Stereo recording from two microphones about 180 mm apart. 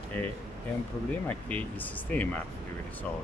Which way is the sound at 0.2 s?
10° left (ahead or behind).